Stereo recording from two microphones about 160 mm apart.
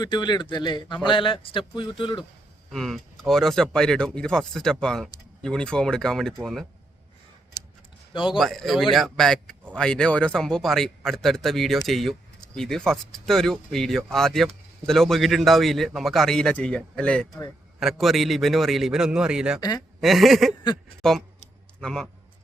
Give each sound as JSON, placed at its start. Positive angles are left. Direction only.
{"t": 0.0, "sound": "a man's voice", "side_deg": 25}
{"t": 2.7, "sound": "speech", "side_deg": 0}
{"t": 8.1, "sound": "a man's voice", "side_deg": 30}
{"t": 8.4, "sound": "a man's voice", "side_deg": 0}